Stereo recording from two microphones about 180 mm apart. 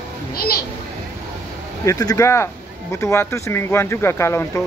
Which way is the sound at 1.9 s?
20° left (ahead or behind).